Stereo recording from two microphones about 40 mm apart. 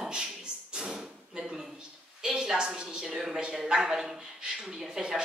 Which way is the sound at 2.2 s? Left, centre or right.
Centre.